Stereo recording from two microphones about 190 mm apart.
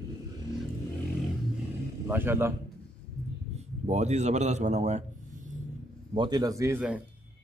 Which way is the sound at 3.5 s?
35° right (ahead or behind).